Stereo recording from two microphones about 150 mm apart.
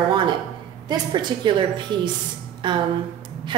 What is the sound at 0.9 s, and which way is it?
A woman's voice, 30° right (ahead or behind).